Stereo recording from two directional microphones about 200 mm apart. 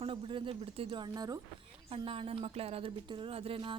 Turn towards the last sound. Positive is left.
turn(degrees=-25)  # may be behind; listen again after turning